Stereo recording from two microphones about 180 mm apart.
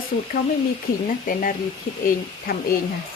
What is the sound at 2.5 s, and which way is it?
Speech, 60° left (ahead or behind).